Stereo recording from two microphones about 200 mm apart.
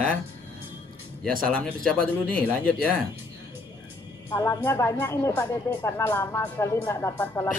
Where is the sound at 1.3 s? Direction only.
45° right (ahead or behind).